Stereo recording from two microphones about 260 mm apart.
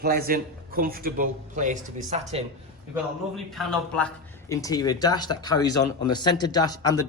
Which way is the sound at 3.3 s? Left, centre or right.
Centre.